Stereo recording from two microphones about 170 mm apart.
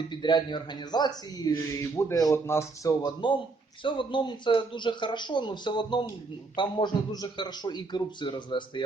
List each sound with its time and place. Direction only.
0.1 s speech: 25° left (ahead or behind)